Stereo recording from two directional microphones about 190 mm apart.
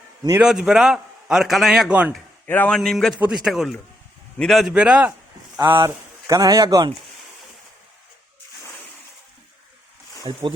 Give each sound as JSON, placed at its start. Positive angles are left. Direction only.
{"t": 0.3, "sound": "a man's voice", "side_deg": -5}
{"t": 2.5, "sound": "a man's voice", "side_deg": 5}
{"t": 10.3, "sound": "speech", "side_deg": -30}